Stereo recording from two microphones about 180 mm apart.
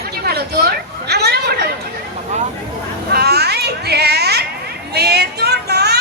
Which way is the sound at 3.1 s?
65° right (ahead or behind).